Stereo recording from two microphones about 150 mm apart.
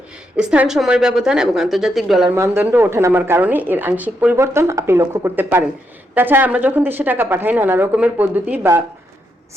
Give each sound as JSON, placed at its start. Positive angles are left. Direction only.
{"t": 0.3, "sound": "a woman's voice", "side_deg": -10}
{"t": 2.3, "sound": "a woman's voice", "side_deg": -15}